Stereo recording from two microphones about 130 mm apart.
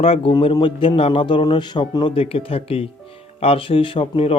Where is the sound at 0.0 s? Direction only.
50° left (ahead or behind).